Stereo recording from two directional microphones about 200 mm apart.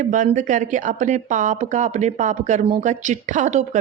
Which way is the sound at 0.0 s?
40° right (ahead or behind).